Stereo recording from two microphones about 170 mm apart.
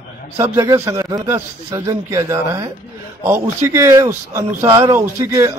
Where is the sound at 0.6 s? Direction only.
20° right (ahead or behind).